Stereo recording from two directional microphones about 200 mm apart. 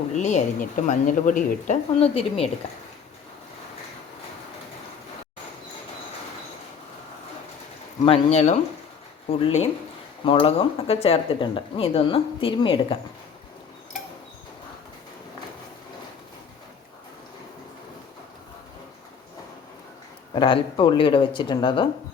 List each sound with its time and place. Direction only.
0.2 s a woman's voice: 35° left (ahead or behind)
8.0 s a woman's voice: 30° left (ahead or behind)
20.3 s speech: 25° left (ahead or behind)